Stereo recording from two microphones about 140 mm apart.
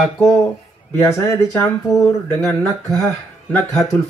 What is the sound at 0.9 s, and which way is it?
Speech, 15° left (ahead or behind).